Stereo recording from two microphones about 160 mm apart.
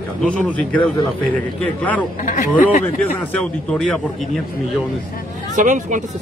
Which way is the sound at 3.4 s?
5° left (ahead or behind).